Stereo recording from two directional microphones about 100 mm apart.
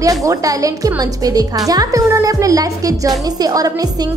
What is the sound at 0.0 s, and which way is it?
A woman's voice, 35° right (ahead or behind).